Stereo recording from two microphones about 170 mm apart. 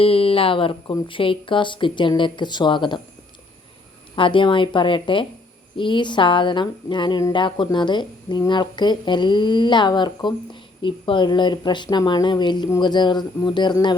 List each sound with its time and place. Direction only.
0.0 s speech: 35° left (ahead or behind)
4.1 s speech: 30° left (ahead or behind)